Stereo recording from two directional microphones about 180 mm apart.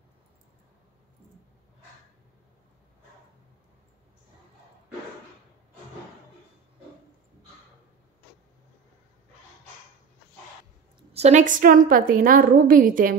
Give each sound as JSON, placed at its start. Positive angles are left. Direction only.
{"t": 11.1, "sound": "a woman's voice", "side_deg": -40}